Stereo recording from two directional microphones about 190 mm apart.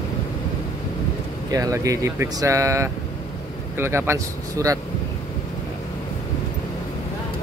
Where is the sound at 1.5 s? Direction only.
15° right (ahead or behind).